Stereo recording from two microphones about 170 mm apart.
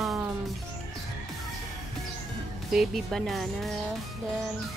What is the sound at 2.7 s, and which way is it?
Speech, centre (ahead or behind).